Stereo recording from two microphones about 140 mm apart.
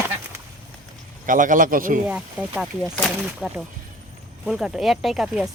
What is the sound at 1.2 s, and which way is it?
Speech, 70° right (ahead or behind).